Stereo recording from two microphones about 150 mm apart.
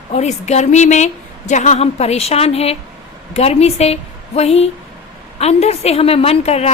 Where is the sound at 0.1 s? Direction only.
50° left (ahead or behind).